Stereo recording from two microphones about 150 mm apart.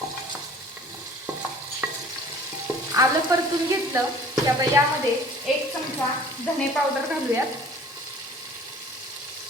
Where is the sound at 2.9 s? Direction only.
20° right (ahead or behind).